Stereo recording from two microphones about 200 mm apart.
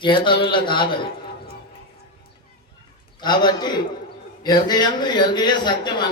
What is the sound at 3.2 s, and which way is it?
A man's voice, 20° left (ahead or behind).